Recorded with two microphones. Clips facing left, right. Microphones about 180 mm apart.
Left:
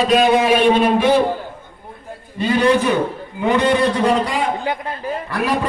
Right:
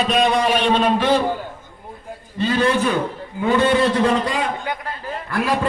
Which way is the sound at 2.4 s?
15° left (ahead or behind).